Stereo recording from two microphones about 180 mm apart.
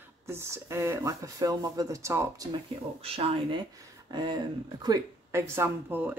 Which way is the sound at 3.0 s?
30° right (ahead or behind).